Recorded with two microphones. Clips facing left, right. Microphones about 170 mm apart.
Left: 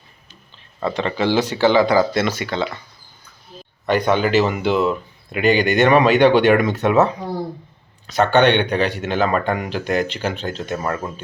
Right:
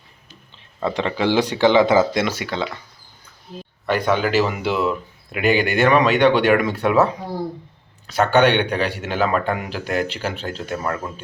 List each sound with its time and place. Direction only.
0.9 s speech: 15° right (ahead or behind)
2.2 s speech: 10° right (ahead or behind)
3.8 s speech: 5° right (ahead or behind)
8.0 s speech: 5° right (ahead or behind)